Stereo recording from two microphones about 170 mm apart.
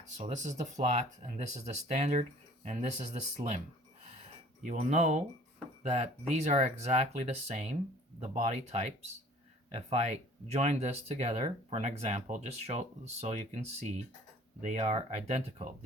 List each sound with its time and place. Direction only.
0.2 s speech: 45° right (ahead or behind)
4.6 s speech: 45° right (ahead or behind)